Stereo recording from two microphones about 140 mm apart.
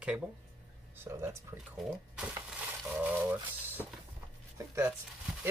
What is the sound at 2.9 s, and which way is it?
Speech, 10° right (ahead or behind).